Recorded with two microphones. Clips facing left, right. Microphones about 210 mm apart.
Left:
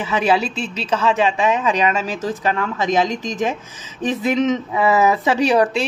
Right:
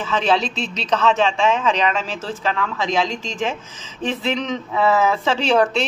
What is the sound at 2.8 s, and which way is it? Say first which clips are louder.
Speech: left 4 dB; 45° left (ahead or behind).